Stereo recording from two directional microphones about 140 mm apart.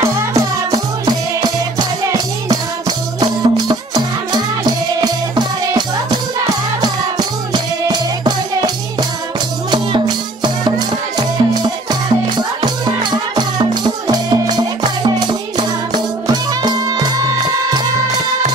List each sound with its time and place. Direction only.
0.0 s music: 20° right (ahead or behind)